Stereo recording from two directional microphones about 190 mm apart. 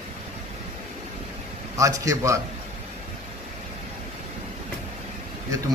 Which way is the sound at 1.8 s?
15° right (ahead or behind).